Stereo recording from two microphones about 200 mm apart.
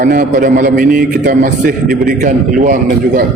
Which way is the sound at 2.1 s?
40° right (ahead or behind).